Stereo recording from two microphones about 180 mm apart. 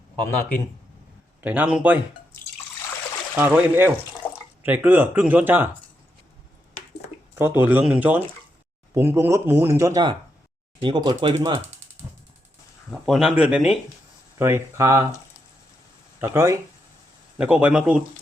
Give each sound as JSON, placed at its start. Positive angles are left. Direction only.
{"t": 1.4, "sound": "speech", "side_deg": -10}
{"t": 3.3, "sound": "speech", "side_deg": -10}
{"t": 4.2, "sound": "drip", "side_deg": 10}
{"t": 4.6, "sound": "speech", "side_deg": -10}
{"t": 7.3, "sound": "speech", "side_deg": -10}
{"t": 12.9, "sound": "speech", "side_deg": -5}
{"t": 16.2, "sound": "speech", "side_deg": -15}